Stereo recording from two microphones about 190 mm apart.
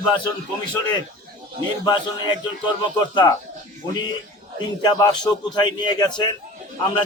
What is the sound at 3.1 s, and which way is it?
Speech, 25° left (ahead or behind).